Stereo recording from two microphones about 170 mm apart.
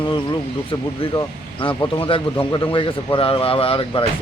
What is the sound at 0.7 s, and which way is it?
Speech, 30° left (ahead or behind).